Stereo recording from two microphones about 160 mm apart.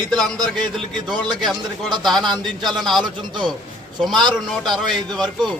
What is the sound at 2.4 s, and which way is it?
Speech, centre (ahead or behind).